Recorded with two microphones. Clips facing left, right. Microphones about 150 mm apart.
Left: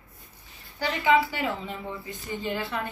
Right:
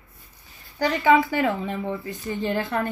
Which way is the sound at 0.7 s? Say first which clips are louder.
Right 4 dB; 45° right (ahead or behind).